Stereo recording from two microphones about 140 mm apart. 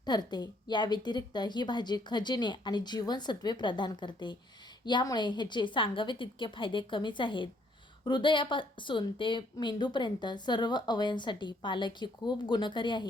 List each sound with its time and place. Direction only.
0.0 s a woman's voice: 30° left (ahead or behind)